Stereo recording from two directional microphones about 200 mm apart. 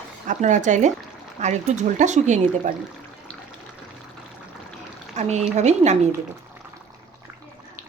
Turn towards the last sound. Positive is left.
turn(degrees=-50)  # may be behind; listen again after turning